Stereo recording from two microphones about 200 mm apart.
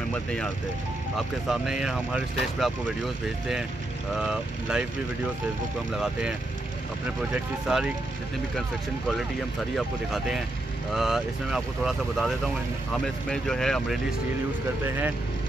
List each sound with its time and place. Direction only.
0.1 s speech: 5° left (ahead or behind)
4.2 s speech: 5° right (ahead or behind)
7.6 s speech: 5° right (ahead or behind)
9.8 s speech: centre (ahead or behind)